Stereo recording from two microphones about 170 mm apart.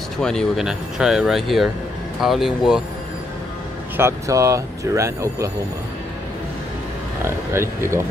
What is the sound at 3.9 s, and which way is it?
Speech, 15° right (ahead or behind).